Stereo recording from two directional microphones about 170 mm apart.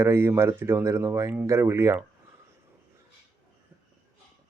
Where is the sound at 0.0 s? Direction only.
15° right (ahead or behind).